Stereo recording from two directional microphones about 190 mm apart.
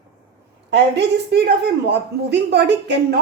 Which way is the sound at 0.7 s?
60° right (ahead or behind).